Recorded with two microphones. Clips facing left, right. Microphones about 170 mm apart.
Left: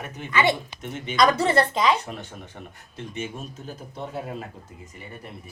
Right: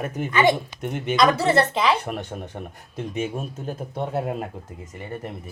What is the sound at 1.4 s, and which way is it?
Speech, 30° right (ahead or behind).